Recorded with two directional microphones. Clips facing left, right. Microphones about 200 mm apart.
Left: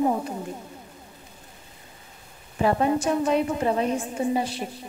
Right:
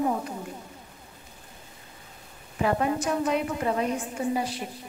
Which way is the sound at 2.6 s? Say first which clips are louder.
Left 3 dB; 30° left (ahead or behind).